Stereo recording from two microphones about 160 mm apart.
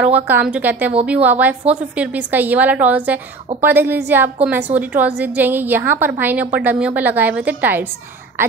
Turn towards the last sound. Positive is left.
turn(degrees=-10)  # may be behind; listen again after turning